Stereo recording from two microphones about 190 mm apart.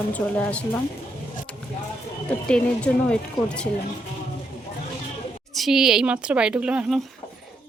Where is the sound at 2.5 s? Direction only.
5° left (ahead or behind).